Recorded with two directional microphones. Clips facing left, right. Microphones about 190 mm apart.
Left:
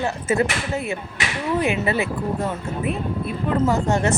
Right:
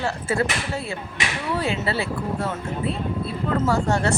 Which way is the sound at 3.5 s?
20° left (ahead or behind).